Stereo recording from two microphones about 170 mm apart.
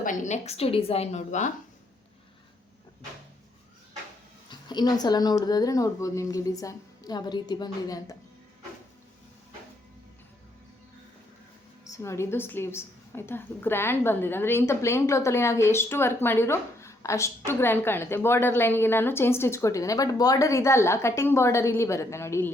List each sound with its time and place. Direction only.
0.0 s a woman's voice: 45° left (ahead or behind)
4.4 s a woman's voice: 25° left (ahead or behind)
11.9 s a woman's voice: 15° left (ahead or behind)